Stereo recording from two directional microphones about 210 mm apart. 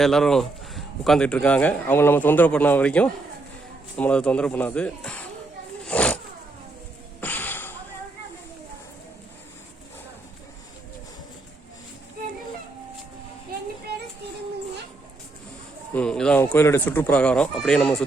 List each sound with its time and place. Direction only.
0.0 s speech: centre (ahead or behind)
5.8 s zipper: 5° left (ahead or behind)
7.2 s a sound: 10° left (ahead or behind)
16.0 s speech: 5° left (ahead or behind)